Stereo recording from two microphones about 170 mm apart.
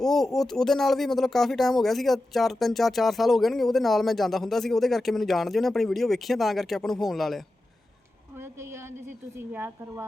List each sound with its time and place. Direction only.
0.0 s speech: centre (ahead or behind)
8.4 s a woman's voice: 15° right (ahead or behind)